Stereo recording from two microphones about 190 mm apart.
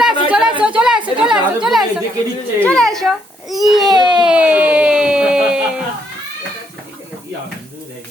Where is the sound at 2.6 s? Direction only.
5° left (ahead or behind).